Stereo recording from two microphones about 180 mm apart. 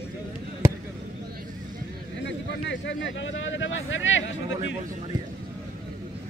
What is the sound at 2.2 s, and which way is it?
A man's voice, 80° left.